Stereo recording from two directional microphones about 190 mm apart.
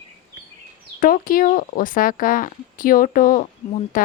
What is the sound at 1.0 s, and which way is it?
Speech, 50° left (ahead or behind).